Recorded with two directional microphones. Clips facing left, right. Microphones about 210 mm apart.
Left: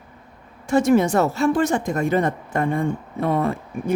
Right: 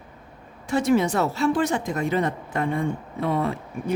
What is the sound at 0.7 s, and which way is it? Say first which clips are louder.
A woman's voice: left 4 dB; 45° left (ahead or behind).